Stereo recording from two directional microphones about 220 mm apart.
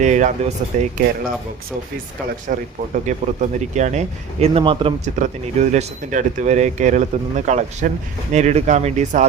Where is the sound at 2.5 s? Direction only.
40° right (ahead or behind).